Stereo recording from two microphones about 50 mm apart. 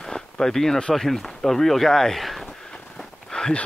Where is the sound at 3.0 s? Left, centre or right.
Centre.